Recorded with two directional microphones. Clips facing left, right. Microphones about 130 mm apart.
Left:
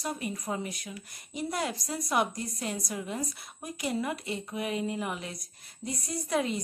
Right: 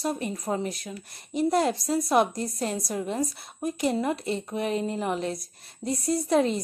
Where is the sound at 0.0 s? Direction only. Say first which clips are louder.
Right 5 dB; 30° right (ahead or behind).